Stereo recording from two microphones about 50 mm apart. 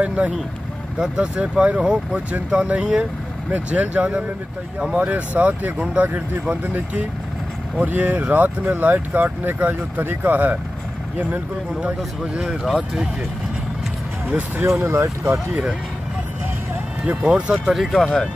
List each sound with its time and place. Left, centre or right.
0.0 s speech: right
0.9 s speech: centre; by 11.4 s right
12.6 s speech: centre
14.8 s speech: right
17.0 s speech: right
17.6 s speech: centre
18.0 s speech: centre